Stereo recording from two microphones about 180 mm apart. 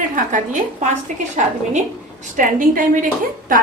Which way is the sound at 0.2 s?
45° right (ahead or behind).